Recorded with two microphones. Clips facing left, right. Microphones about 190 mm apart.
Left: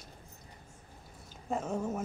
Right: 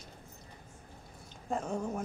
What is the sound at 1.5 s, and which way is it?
Speech, 5° left (ahead or behind).